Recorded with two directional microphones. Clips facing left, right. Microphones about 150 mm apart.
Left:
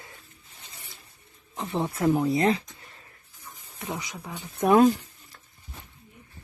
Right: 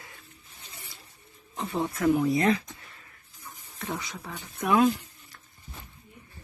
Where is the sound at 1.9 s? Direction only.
30° left (ahead or behind).